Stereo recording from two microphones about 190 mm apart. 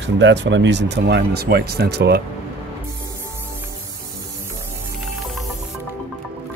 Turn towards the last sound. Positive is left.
turn(degrees=0)  # may be behind; listen again after turning